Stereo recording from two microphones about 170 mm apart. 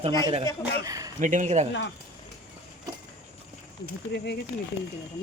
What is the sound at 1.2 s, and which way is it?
Speech, 50° right (ahead or behind).